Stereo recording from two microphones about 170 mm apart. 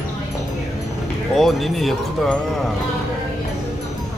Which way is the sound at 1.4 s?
Centre (ahead or behind).